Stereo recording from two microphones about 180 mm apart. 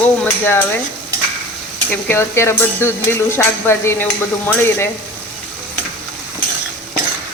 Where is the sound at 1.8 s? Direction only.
15° left (ahead or behind).